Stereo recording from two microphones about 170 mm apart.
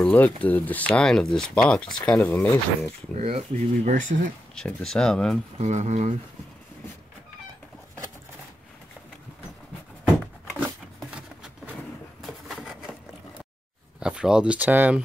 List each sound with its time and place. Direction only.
0.0 s speech: 10° left (ahead or behind)
3.2 s speech: 35° right (ahead or behind)
4.6 s speech: 5° left (ahead or behind)
5.6 s speech: 45° right (ahead or behind)
11.1 s a sound: 5° right (ahead or behind)
13.9 s speech: 5° right (ahead or behind)